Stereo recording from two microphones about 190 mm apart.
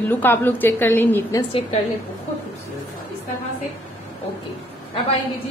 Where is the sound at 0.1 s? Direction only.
10° left (ahead or behind).